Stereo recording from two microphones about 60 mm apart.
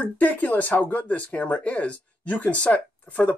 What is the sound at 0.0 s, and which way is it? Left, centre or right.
Speech, left.